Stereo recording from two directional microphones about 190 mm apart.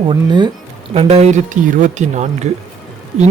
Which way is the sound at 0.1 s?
25° right (ahead or behind).